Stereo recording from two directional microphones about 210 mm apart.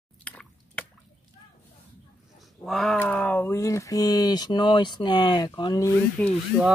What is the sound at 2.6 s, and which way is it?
Speech, centre (ahead or behind).